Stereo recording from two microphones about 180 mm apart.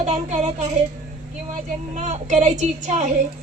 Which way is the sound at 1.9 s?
40° right (ahead or behind).